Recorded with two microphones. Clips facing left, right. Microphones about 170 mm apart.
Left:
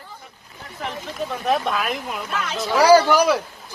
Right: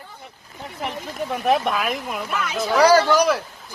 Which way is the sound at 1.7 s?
Centre (ahead or behind).